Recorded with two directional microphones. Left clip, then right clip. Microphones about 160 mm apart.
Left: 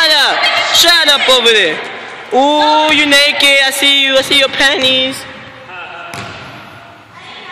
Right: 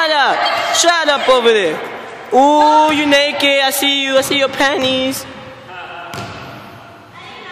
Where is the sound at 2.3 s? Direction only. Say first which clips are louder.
Even; 5° right (ahead or behind).